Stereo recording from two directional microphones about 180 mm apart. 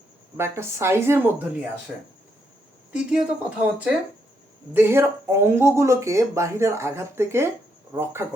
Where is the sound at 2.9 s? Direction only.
5° right (ahead or behind).